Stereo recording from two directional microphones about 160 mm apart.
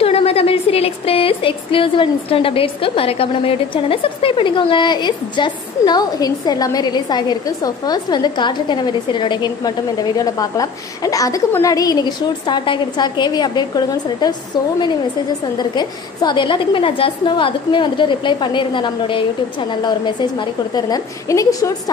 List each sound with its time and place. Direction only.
0.0 s speech: 40° left (ahead or behind)
15.5 s a woman's voice: 25° left (ahead or behind)